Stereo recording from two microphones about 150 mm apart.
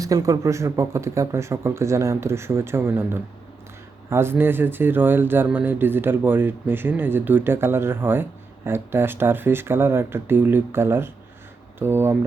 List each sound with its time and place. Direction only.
0.0 s speech: 25° right (ahead or behind)